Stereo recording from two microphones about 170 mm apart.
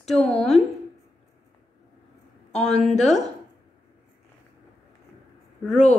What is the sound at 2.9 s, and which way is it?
Speech, 40° left (ahead or behind).